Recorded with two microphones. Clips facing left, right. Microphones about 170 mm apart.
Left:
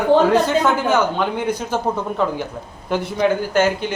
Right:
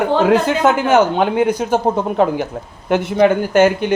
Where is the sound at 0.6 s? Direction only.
55° right (ahead or behind).